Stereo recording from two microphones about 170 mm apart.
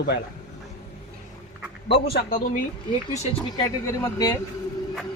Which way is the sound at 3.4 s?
20° left (ahead or behind).